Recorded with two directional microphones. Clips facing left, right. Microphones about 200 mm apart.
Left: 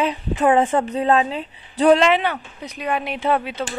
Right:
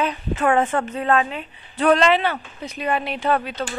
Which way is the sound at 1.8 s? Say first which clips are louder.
Left 2 dB; 15° left (ahead or behind).